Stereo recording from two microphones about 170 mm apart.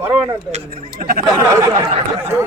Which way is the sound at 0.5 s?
55° right (ahead or behind).